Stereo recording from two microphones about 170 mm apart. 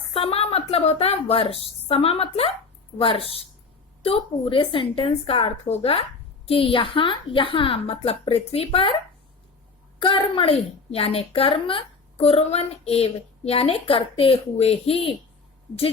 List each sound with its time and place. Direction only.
0.1 s a woman's voice: 35° left (ahead or behind)
10.0 s a woman's voice: 30° left (ahead or behind)